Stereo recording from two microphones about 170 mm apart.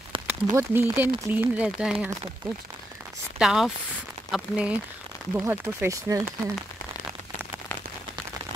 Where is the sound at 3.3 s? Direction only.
5° right (ahead or behind).